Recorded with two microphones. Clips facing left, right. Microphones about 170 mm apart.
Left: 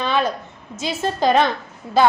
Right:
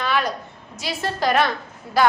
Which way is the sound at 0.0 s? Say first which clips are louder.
Left 3 dB; 20° left (ahead or behind).